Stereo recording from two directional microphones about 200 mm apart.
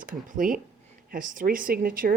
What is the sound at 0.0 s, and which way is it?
Speech, 40° right (ahead or behind).